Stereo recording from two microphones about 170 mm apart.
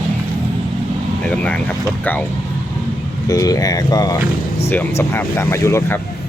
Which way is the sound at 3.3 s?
20° left (ahead or behind).